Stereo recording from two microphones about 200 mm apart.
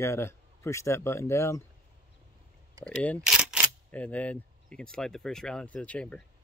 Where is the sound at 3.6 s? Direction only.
10° left (ahead or behind).